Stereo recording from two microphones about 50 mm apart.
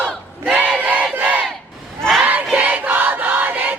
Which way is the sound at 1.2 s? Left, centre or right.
Right.